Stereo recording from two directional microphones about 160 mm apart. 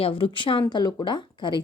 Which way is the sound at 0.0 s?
35° left (ahead or behind).